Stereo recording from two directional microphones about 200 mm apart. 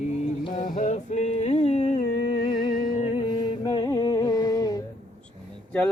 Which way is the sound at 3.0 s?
25° left (ahead or behind).